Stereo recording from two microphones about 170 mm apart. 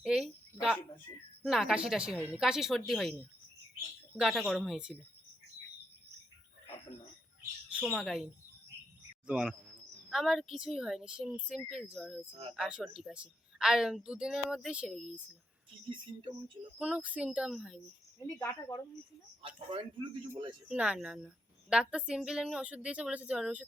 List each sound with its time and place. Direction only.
0.0 s a sound: 5° right (ahead or behind)
1.5 s a woman's voice: centre (ahead or behind)
4.2 s a woman's voice: centre (ahead or behind)
7.7 s a woman's voice: 5° right (ahead or behind)
12.3 s speech: 30° right (ahead or behind)
12.5 s a woman's voice: 5° right (ahead or behind)
16.7 s a woman's voice: 5° right (ahead or behind)
18.2 s speech: 15° left (ahead or behind)
19.4 s speech: 30° right (ahead or behind)
20.3 s a woman's voice: 10° right (ahead or behind)